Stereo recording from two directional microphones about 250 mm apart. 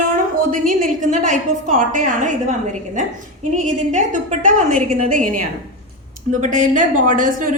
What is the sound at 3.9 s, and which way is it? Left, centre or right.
A woman's voice, right.